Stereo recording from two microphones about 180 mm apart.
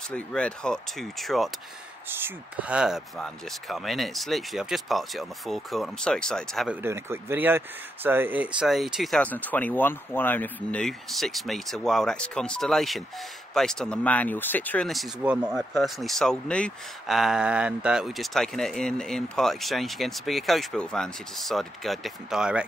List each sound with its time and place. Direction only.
0.1 s speech: 5° left (ahead or behind)
2.0 s speech: 10° right (ahead or behind)
6.8 s speech: 15° right (ahead or behind)